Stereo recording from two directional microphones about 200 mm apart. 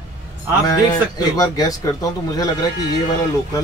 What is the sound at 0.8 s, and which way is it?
A man's voice, 20° left (ahead or behind).